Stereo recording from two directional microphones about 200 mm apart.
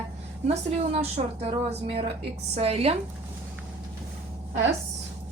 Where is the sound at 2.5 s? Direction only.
30° right (ahead or behind).